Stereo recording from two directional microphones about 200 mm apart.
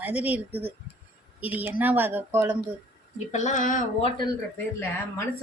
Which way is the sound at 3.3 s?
35° left (ahead or behind).